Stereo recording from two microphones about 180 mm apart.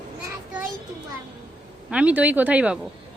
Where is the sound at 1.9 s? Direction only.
5° right (ahead or behind).